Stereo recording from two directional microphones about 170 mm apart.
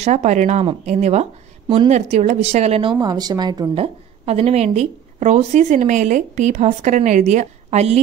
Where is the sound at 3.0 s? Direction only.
25° right (ahead or behind).